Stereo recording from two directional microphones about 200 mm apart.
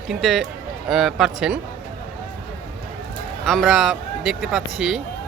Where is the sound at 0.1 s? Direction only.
Centre (ahead or behind).